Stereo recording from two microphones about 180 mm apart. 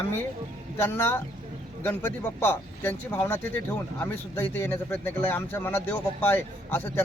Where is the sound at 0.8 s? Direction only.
15° left (ahead or behind).